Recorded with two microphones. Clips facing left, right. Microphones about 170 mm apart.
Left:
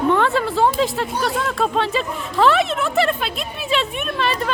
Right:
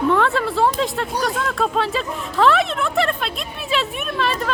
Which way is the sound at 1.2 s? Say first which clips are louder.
Left 1 dB; centre (ahead or behind).